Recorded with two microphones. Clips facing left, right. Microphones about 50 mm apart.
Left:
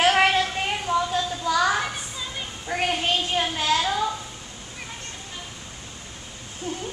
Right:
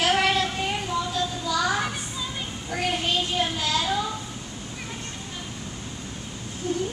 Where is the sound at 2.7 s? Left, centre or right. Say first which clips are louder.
Left 2 dB; left.